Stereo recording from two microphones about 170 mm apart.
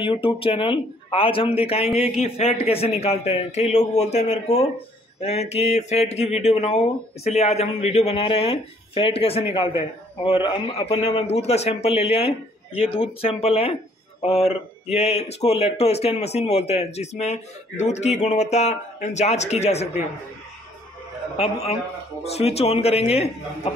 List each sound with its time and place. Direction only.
0.0 s speech: 30° left (ahead or behind)
22.3 s speech: 35° left (ahead or behind)